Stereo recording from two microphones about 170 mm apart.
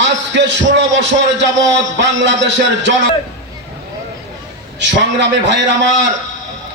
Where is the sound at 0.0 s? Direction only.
90° right.